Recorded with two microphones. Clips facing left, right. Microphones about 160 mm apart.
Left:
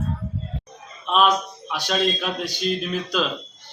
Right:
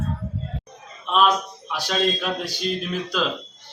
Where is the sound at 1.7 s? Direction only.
Centre (ahead or behind).